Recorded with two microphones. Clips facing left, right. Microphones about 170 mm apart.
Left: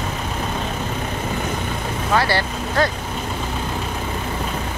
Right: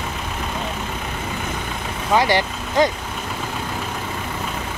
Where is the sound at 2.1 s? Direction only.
15° right (ahead or behind).